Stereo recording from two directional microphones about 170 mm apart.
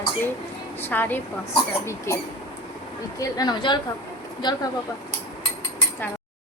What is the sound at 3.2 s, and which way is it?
Speech, 20° left (ahead or behind).